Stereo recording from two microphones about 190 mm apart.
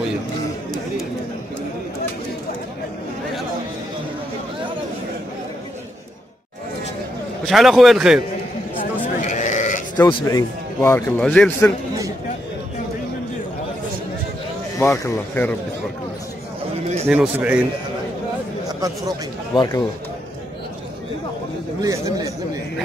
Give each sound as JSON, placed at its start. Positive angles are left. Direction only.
{"t": 7.4, "sound": "a man's voice", "side_deg": 0}
{"t": 8.7, "sound": "sheep", "side_deg": 45}
{"t": 10.0, "sound": "speech", "side_deg": 15}
{"t": 14.8, "sound": "speech", "side_deg": 10}
{"t": 17.1, "sound": "speech", "side_deg": -5}
{"t": 19.5, "sound": "speech", "side_deg": 20}
{"t": 21.8, "sound": "speech", "side_deg": -15}